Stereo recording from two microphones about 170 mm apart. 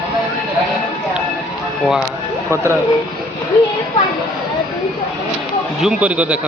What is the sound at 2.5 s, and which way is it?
Speech, 15° right (ahead or behind).